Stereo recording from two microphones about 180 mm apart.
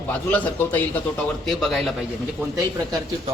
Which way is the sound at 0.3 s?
10° left (ahead or behind).